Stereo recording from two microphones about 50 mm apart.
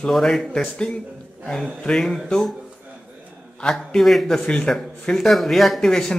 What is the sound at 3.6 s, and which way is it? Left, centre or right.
Speech, centre.